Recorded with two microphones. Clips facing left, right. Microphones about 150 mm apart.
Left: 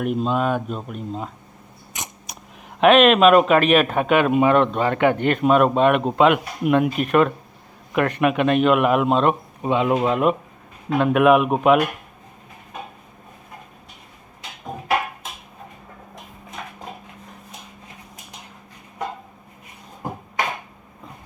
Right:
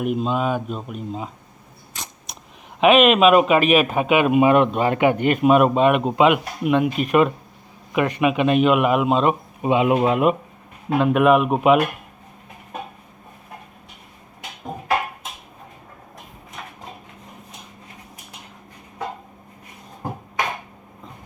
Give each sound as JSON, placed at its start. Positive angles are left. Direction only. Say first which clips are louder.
{"t": 0.0, "sound": "a man's voice", "louder": "even", "side_deg": 0}
{"t": 2.0, "sound": "mechanisms", "louder": "left 2 dB", "side_deg": 15}
{"t": 2.8, "sound": "a man's voice", "louder": "left 1 dB", "side_deg": -5}
{"t": 9.6, "sound": "a man's voice", "louder": "right 4 dB", "side_deg": -15}